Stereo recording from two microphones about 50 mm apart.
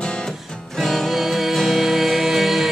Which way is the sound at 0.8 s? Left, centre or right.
Centre.